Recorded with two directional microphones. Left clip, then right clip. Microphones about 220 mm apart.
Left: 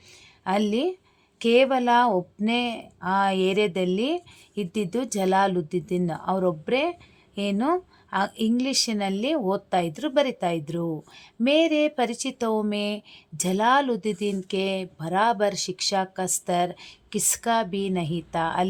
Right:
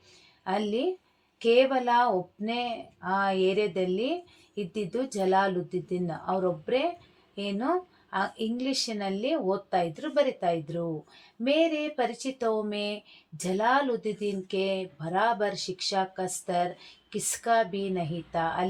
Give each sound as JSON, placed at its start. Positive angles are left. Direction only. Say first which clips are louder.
{"t": 0.4, "sound": "speech", "louder": "left 4 dB", "side_deg": 35}